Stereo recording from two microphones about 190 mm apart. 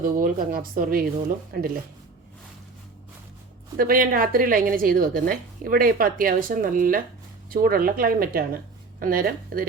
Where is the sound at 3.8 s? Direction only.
50° right (ahead or behind).